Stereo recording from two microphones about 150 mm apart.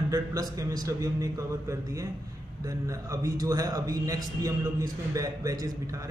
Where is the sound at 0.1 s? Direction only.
25° right (ahead or behind).